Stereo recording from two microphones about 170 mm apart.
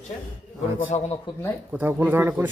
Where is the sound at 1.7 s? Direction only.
10° right (ahead or behind).